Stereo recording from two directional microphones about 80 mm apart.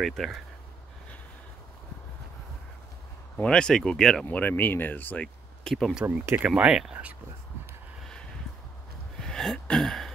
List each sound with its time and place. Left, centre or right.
0.0 s speech: centre
3.4 s speech: centre
4.3 s speech: left
6.0 s speech: right
6.5 s speech: centre
9.2 s a sound: centre